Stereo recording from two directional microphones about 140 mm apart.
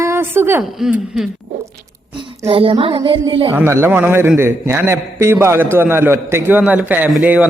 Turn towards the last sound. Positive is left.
turn(degrees=-10)  # may be behind; listen again after turning